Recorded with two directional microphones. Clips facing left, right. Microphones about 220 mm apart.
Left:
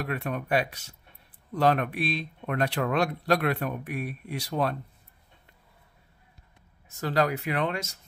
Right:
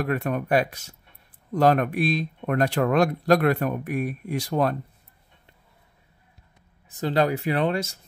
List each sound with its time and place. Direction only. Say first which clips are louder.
0.0 s speech: right 6 dB; 50° right (ahead or behind)
7.0 s speech: right 4 dB; 25° right (ahead or behind)